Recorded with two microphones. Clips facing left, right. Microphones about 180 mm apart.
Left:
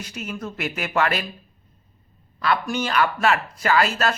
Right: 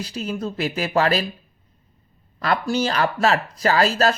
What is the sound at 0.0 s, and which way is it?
Speech, 30° right (ahead or behind).